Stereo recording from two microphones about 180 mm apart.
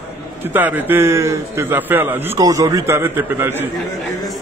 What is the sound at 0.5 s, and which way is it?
A man's voice, 10° right (ahead or behind).